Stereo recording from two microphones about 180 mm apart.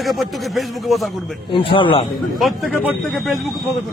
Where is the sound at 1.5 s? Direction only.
25° left (ahead or behind).